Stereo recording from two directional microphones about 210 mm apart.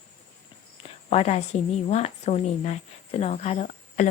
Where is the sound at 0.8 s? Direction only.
30° left (ahead or behind).